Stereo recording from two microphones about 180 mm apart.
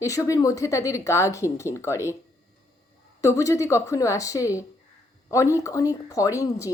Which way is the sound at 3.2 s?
15° left (ahead or behind).